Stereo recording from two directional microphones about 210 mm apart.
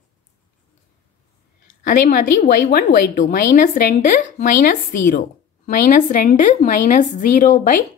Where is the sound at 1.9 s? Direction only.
40° left (ahead or behind).